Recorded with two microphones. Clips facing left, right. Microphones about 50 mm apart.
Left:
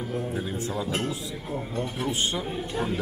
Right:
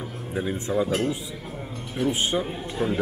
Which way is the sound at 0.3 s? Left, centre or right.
Centre.